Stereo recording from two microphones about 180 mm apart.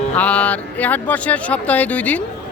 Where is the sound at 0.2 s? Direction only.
5° left (ahead or behind).